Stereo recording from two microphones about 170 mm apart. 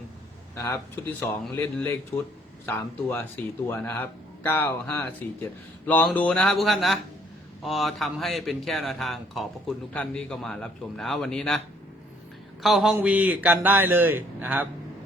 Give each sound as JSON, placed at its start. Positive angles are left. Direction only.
{"t": 0.5, "sound": "speech", "side_deg": 15}
{"t": 12.6, "sound": "a man's voice", "side_deg": 0}